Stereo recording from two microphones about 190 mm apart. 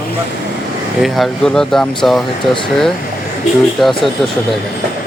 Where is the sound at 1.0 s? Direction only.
Centre (ahead or behind).